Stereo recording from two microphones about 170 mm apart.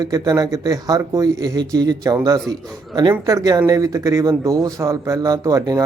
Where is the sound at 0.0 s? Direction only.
20° right (ahead or behind).